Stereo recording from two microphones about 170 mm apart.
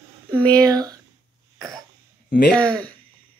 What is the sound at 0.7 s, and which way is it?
Speech, 20° right (ahead or behind).